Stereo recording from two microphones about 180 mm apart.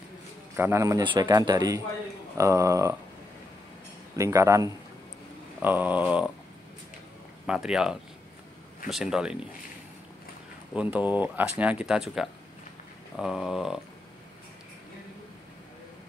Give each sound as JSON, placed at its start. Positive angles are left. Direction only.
{"t": 0.6, "sound": "speech", "side_deg": -15}
{"t": 4.2, "sound": "speech", "side_deg": -20}
{"t": 7.4, "sound": "speech", "side_deg": -5}
{"t": 10.7, "sound": "speech", "side_deg": -5}